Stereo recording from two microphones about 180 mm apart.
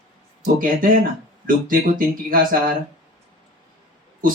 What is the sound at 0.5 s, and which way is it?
Speech, 50° right (ahead or behind).